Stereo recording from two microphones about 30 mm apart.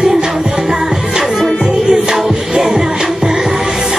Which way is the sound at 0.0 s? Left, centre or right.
Centre.